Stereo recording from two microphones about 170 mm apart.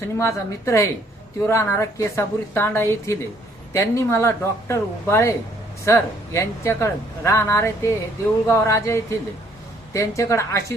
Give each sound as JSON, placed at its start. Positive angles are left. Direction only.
{"t": 0.2, "sound": "speech", "side_deg": 15}